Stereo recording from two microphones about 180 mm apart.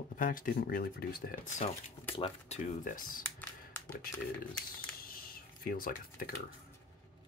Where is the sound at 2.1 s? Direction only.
30° left (ahead or behind).